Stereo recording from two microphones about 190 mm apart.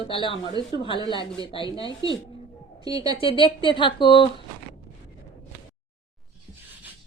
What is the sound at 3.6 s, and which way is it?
Speech, 25° left (ahead or behind).